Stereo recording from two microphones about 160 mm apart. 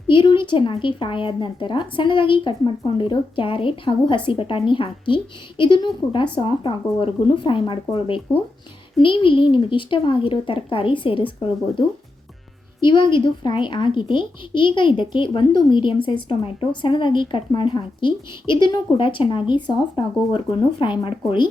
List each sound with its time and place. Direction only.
0.1 s speech: 30° left (ahead or behind)
12.8 s speech: 30° left (ahead or behind)